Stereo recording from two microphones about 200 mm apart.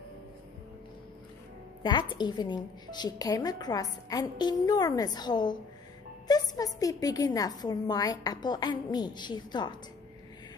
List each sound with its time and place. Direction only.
1.8 s a woman's voice: 25° left (ahead or behind)